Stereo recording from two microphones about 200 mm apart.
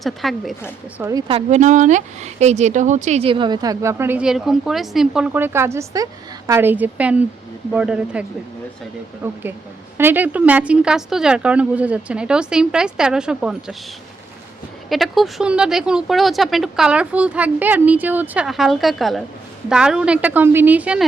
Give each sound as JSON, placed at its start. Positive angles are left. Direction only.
{"t": 0.0, "sound": "speech", "side_deg": 0}
{"t": 0.9, "sound": "a woman's voice", "side_deg": -15}
{"t": 1.3, "sound": "a woman's voice", "side_deg": -30}
{"t": 9.2, "sound": "a woman's voice", "side_deg": -10}
{"t": 14.8, "sound": "speech", "side_deg": 0}